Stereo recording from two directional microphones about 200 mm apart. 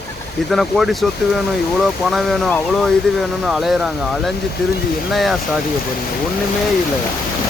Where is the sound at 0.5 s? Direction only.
Centre (ahead or behind).